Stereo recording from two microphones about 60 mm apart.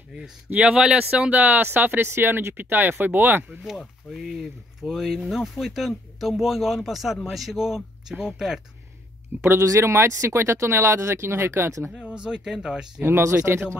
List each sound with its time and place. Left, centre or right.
0.5 s speech: centre
1.4 s speech: right
4.2 s speech: centre
9.3 s speech: right
9.8 s speech: right
11.9 s speech: centre
13.4 s speech: right